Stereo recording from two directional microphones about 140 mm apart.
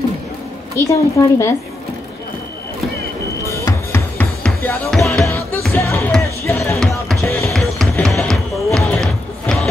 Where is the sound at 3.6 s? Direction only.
15° left (ahead or behind).